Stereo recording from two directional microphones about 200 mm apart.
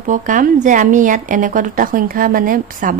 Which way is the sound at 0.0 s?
40° right (ahead or behind).